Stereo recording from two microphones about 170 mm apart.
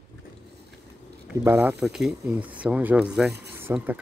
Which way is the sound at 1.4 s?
15° right (ahead or behind).